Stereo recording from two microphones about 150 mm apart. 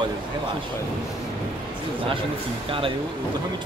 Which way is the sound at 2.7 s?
35° right (ahead or behind).